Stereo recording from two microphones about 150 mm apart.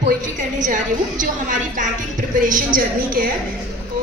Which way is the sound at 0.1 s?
60° right (ahead or behind).